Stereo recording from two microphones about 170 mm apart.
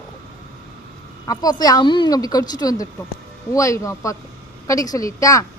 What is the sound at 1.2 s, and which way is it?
A woman's voice, 20° left (ahead or behind).